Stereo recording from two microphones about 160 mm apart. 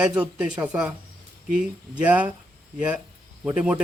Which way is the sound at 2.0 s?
10° right (ahead or behind).